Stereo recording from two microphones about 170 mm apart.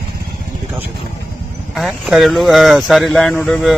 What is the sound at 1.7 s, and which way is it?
Speech, centre (ahead or behind).